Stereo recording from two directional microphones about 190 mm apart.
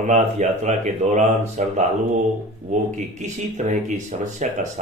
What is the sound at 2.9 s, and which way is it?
Speech, 40° right (ahead or behind).